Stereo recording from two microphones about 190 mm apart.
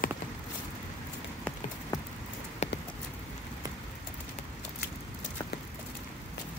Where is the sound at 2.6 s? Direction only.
35° left (ahead or behind).